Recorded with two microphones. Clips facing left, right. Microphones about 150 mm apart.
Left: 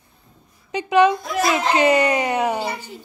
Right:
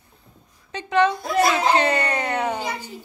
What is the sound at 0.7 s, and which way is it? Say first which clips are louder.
Speech: left 4 dB; 10° left (ahead or behind).